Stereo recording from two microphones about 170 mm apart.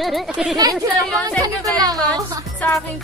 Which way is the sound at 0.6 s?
20° right (ahead or behind).